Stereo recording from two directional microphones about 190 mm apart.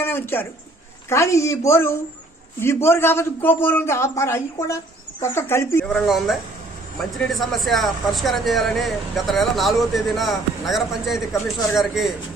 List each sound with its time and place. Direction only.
0.0 s a sound: 10° left (ahead or behind)
1.0 s speech: 15° left (ahead or behind)
5.9 s speech: centre (ahead or behind)